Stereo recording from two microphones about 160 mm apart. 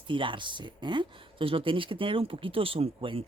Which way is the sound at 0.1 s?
30° right (ahead or behind).